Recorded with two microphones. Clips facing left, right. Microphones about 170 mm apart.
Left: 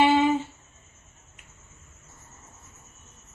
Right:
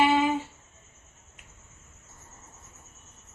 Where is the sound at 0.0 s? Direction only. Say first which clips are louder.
Left 3 dB; 25° left (ahead or behind).